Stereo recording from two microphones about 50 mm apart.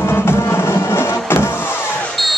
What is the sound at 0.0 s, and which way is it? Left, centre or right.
Music, left.